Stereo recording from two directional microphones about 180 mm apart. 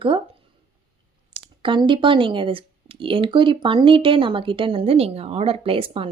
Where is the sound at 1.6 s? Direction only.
25° right (ahead or behind).